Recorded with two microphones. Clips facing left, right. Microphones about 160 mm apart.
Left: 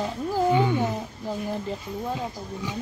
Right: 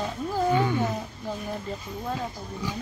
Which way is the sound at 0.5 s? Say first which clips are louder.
Left 1 dB; 20° left (ahead or behind).